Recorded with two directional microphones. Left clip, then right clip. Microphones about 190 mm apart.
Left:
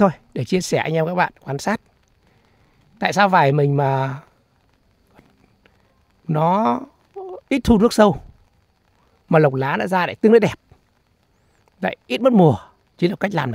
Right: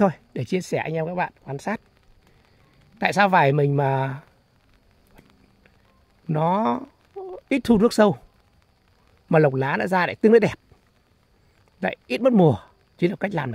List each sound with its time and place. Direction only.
0.0 s speech: 20° left (ahead or behind)
3.0 s speech: 15° left (ahead or behind)
6.2 s speech: 15° left (ahead or behind)
9.3 s speech: 15° left (ahead or behind)
11.8 s speech: 15° left (ahead or behind)